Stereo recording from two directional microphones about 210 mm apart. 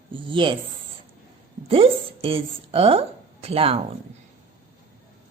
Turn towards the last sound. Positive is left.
turn(degrees=-25)  # may be behind; listen again after turning